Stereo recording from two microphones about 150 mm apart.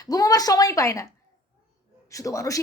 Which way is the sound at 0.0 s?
25° left (ahead or behind).